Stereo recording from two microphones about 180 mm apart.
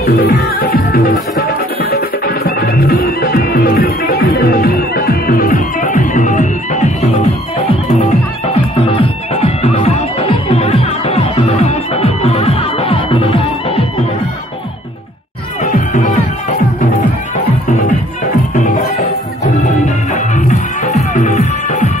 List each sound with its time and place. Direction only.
0.0 s music: 60° left (ahead or behind); by 7.6 s 40° left (ahead or behind)
8.9 s music: 30° left (ahead or behind)
15.6 s music: 45° left (ahead or behind)
17.6 s music: 40° left (ahead or behind)